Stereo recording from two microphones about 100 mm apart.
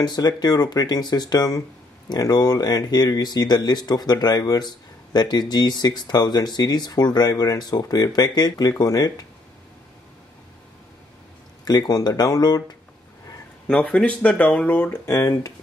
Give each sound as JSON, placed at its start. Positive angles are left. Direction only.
{"t": 0.0, "sound": "speech", "side_deg": 45}
{"t": 11.6, "sound": "speech", "side_deg": 40}
{"t": 13.7, "sound": "speech", "side_deg": 10}